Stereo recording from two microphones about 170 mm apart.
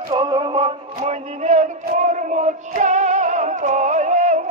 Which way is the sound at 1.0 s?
40° right (ahead or behind).